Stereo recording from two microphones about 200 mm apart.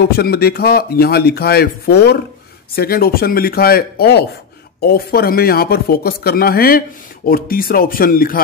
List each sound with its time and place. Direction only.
0.0 s speech: 50° left (ahead or behind)